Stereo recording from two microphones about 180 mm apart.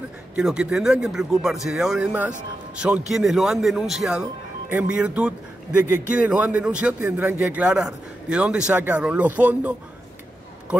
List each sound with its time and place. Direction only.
0.4 s speech: 5° right (ahead or behind)